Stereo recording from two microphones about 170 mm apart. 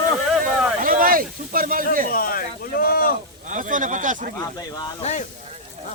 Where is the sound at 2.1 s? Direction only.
55° left (ahead or behind).